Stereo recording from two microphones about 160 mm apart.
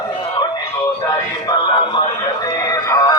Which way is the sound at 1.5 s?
30° left (ahead or behind).